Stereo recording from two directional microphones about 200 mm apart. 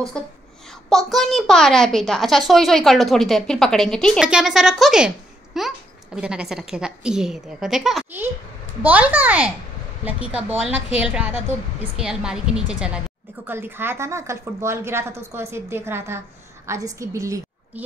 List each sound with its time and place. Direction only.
0.8 s a woman's voice: centre (ahead or behind); by 17.8 s 15° right (ahead or behind)